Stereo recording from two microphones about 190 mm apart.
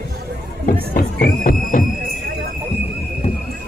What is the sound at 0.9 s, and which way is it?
Music, 50° left (ahead or behind).